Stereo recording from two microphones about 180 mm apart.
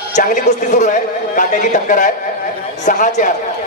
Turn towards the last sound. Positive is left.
turn(degrees=45)  # may be behind; listen again after turning